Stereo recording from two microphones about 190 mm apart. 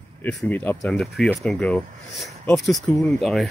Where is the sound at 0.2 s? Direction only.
5° left (ahead or behind).